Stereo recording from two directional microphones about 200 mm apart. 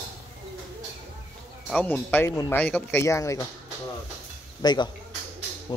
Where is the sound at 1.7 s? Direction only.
5° left (ahead or behind).